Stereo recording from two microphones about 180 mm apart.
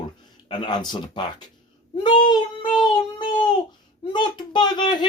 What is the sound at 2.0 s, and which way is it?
Child singing, 25° left (ahead or behind).